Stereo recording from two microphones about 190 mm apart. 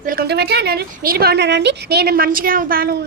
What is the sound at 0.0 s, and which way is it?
A woman's voice, 50° right (ahead or behind).